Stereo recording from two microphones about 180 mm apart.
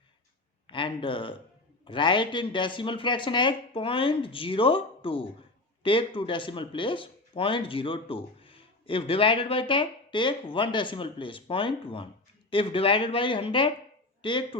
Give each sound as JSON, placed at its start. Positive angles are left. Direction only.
{"t": 0.7, "sound": "speech", "side_deg": 25}